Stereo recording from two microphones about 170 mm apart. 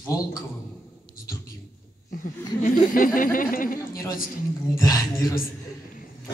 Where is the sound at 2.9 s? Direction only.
55° left (ahead or behind).